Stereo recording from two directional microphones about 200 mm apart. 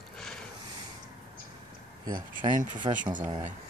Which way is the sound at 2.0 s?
20° right (ahead or behind).